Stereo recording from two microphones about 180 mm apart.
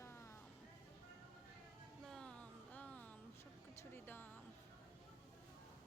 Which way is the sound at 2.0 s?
5° left (ahead or behind).